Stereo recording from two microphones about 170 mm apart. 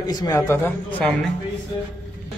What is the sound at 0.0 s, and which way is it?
A man's voice, 25° left (ahead or behind).